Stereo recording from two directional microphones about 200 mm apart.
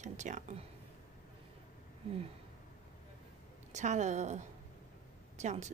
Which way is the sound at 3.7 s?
35° right (ahead or behind).